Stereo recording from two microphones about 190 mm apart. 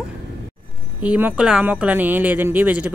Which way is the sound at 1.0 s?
10° right (ahead or behind).